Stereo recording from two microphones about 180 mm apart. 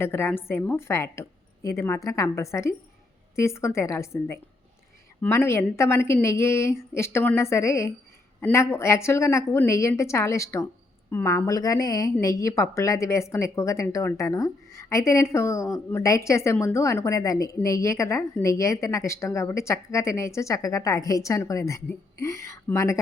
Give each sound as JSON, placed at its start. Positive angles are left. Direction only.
{"t": 0.0, "sound": "a woman's voice", "side_deg": 15}